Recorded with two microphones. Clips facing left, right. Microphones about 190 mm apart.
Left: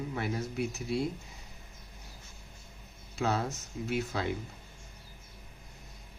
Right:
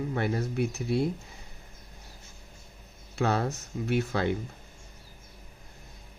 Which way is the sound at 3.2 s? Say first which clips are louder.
Right 4 dB; 60° right (ahead or behind).